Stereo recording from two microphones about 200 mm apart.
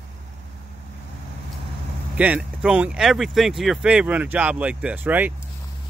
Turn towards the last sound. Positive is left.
turn(degrees=-10)  # may be behind; listen again after turning